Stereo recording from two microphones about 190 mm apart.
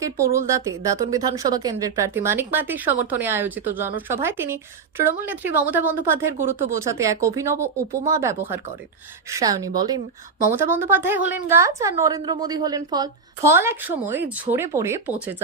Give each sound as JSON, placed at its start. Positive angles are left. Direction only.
{"t": 0.0, "sound": "a woman's voice", "side_deg": -15}